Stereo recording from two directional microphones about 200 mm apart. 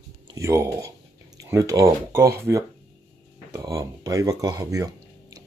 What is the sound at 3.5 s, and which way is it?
Speech, 15° right (ahead or behind).